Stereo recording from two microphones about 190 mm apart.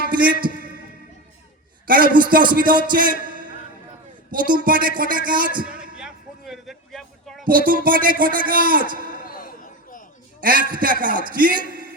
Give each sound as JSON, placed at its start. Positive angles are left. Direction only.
{"t": 0.1, "sound": "a man's voice", "side_deg": -50}
{"t": 1.9, "sound": "a man's voice", "side_deg": -45}
{"t": 4.3, "sound": "a man's voice", "side_deg": -50}
{"t": 6.0, "sound": "a sound", "side_deg": -5}
{"t": 7.4, "sound": "a man's voice", "side_deg": -50}
{"t": 9.2, "sound": "a sound", "side_deg": 50}
{"t": 10.4, "sound": "a man's voice", "side_deg": -45}